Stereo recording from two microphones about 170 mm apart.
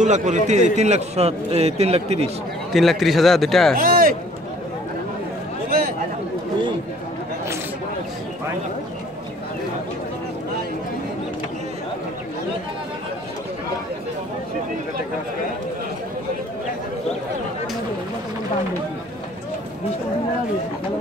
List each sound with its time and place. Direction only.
0.0 s a man's voice: 45° right (ahead or behind)
2.7 s a man's voice: centre (ahead or behind)
3.7 s a man's voice: 55° right (ahead or behind)
5.7 s chatter: 60° right (ahead or behind)